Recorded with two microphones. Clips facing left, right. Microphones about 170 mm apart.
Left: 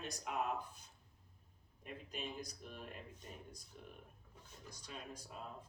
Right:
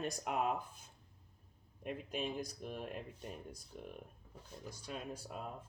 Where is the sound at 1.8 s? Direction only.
55° right (ahead or behind).